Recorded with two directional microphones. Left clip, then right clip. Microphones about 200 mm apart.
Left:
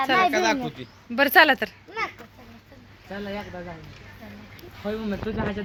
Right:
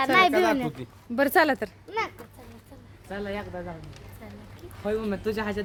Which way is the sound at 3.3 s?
20° left (ahead or behind).